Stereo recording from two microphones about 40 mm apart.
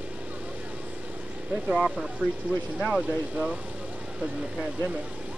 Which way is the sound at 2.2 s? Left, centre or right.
Centre.